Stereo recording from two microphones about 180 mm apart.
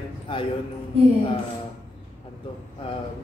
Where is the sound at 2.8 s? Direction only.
35° left (ahead or behind).